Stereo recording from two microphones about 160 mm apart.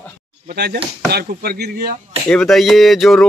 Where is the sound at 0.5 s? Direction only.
85° right.